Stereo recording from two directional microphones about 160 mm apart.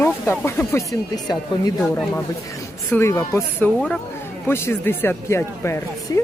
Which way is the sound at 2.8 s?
15° left (ahead or behind).